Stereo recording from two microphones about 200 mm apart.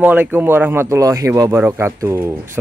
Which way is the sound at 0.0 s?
10° right (ahead or behind).